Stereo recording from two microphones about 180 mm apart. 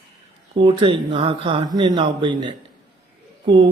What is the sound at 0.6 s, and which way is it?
Speech, 30° right (ahead or behind).